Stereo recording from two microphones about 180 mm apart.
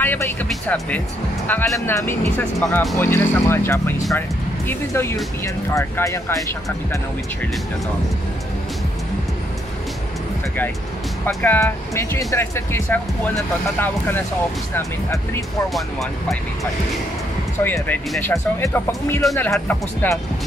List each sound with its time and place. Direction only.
0.0 s music: 10° left (ahead or behind)
0.5 s speech: 5° left (ahead or behind)
2.6 s speech: centre (ahead or behind)
3.0 s speech: 15° left (ahead or behind)
11.2 s speech: 10° left (ahead or behind)
14.8 s speech: 15° left (ahead or behind)
15.7 s speech: centre (ahead or behind)
17.6 s speech: 5° left (ahead or behind)